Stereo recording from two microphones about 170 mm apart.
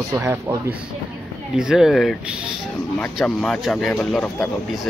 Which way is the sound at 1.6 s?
5° right (ahead or behind).